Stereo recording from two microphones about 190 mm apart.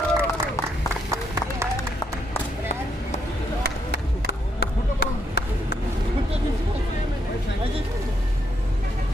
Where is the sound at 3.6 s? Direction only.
60° right (ahead or behind).